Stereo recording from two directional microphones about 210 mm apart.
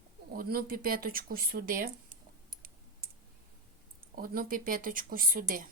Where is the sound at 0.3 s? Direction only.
45° right (ahead or behind).